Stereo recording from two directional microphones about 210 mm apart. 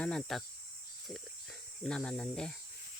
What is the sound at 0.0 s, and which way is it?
Speech, 5° left (ahead or behind).